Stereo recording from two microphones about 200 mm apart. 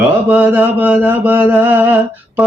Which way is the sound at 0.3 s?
10° right (ahead or behind).